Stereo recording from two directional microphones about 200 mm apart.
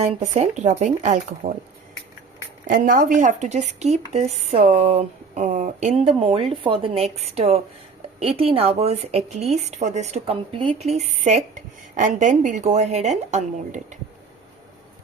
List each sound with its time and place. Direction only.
0.0 s a woman's voice: 35° right (ahead or behind)
2.6 s a woman's voice: 45° right (ahead or behind)